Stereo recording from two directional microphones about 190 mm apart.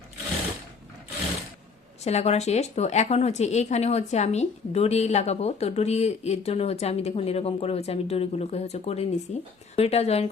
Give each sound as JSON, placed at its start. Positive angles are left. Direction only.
{"t": 2.0, "sound": "a woman's voice", "side_deg": 35}